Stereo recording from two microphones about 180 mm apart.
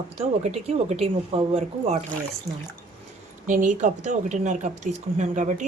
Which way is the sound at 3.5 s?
45° right (ahead or behind).